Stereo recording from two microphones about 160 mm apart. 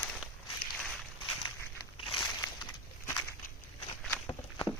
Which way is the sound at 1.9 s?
30° left (ahead or behind).